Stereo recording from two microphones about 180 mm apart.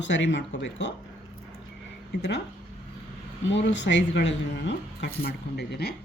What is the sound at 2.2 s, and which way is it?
Speech, 70° left (ahead or behind).